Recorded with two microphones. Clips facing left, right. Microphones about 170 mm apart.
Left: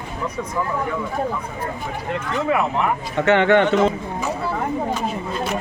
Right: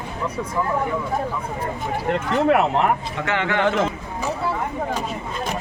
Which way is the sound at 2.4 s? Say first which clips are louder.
Right 2 dB; 70° right (ahead or behind).